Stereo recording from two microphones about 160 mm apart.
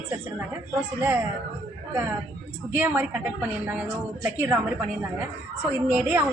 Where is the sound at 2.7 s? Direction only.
15° right (ahead or behind).